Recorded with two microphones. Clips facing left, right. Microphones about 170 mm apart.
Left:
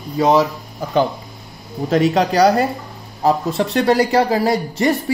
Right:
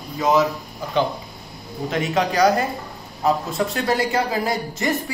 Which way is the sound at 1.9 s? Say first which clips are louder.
Left 6 dB; 35° left (ahead or behind).